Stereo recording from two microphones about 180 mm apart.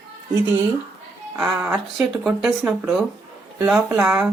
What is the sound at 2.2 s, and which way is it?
Speech, 5° right (ahead or behind).